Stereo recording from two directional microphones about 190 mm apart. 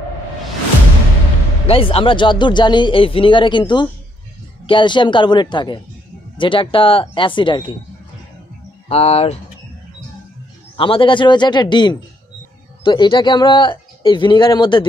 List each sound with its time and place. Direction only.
1.7 s speech: 30° left (ahead or behind)
8.8 s speech: 30° left (ahead or behind)
10.8 s speech: 25° left (ahead or behind)